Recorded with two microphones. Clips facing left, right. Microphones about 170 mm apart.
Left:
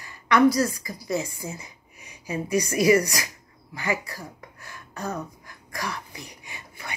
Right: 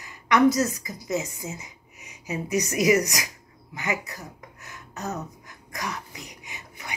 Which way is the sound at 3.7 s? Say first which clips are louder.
Left 2 dB; 20° right (ahead or behind).